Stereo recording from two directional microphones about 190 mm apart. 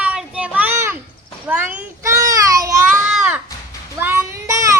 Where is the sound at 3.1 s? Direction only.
5° right (ahead or behind).